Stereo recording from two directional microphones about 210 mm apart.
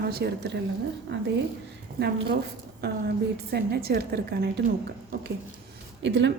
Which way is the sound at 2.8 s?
50° right (ahead or behind).